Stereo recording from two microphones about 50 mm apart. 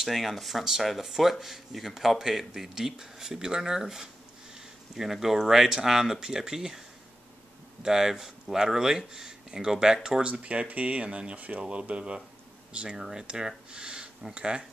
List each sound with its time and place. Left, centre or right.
0.0 s speech: centre
7.8 s speech: centre
10.2 s speech: right